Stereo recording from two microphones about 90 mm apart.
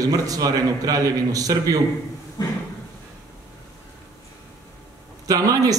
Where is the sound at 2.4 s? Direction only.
45° left (ahead or behind).